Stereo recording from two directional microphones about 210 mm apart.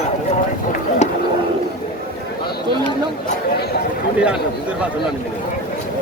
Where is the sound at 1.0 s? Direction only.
30° left (ahead or behind).